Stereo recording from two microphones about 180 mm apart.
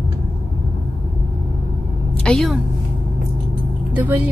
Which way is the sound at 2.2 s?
Centre (ahead or behind).